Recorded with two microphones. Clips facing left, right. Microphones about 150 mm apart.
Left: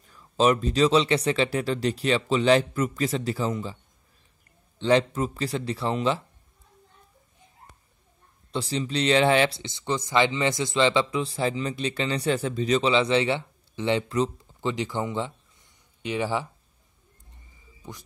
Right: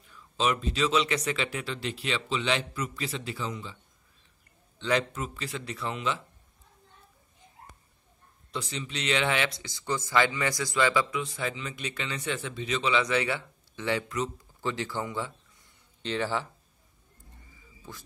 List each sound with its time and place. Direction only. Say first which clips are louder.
0.0 s speech: left 7 dB; 40° left (ahead or behind)
4.7 s speech: left 7 dB; 30° left (ahead or behind)
8.5 s speech: left 8 dB; 30° left (ahead or behind)
14.6 s speech: left 4 dB; 20° left (ahead or behind)
17.8 s speech: left 4 dB; 20° left (ahead or behind)